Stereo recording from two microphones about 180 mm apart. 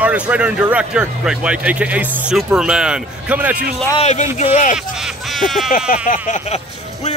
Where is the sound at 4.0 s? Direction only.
40° left (ahead or behind).